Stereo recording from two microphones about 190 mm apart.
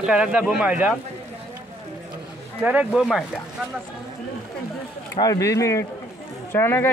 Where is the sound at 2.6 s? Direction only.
5° right (ahead or behind).